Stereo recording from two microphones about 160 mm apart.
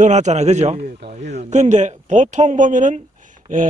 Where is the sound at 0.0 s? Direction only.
45° right (ahead or behind).